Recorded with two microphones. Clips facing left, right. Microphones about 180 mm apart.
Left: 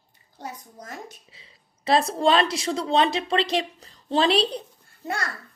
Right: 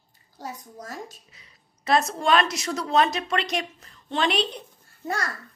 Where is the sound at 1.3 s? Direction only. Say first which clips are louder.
Left 2 dB; 30° left (ahead or behind).